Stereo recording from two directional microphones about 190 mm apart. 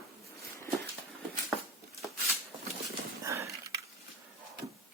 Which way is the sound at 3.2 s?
15° right (ahead or behind).